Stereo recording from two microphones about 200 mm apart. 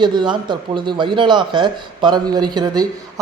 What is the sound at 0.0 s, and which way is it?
A man's voice, 20° right (ahead or behind).